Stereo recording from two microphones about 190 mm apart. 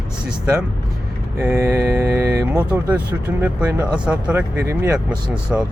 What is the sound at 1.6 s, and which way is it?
Speech, 15° right (ahead or behind).